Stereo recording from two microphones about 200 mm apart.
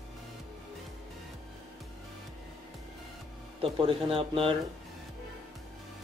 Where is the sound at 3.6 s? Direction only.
25° right (ahead or behind).